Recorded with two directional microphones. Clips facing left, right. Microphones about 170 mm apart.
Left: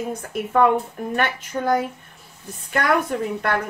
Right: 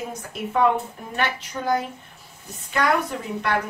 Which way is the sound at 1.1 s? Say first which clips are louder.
Left 2 dB; 50° left (ahead or behind).